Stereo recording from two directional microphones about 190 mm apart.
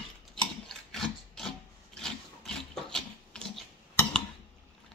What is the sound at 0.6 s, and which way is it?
Wood, centre (ahead or behind).